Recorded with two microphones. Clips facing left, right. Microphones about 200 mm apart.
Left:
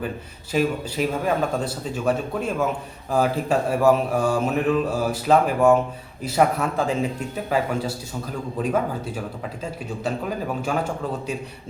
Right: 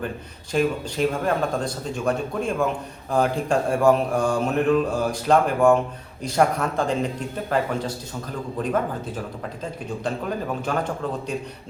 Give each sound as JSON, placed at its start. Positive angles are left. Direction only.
{"t": 0.5, "sound": "speech", "side_deg": 5}